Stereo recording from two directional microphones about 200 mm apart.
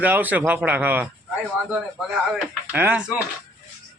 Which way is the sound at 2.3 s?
10° right (ahead or behind).